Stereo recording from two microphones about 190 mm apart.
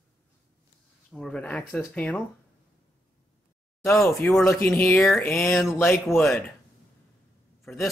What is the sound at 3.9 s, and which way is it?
Speech, centre (ahead or behind).